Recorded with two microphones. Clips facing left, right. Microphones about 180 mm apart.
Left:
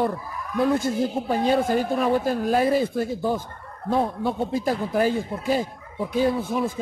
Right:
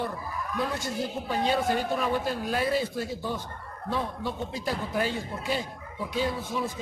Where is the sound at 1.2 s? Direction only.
45° left (ahead or behind).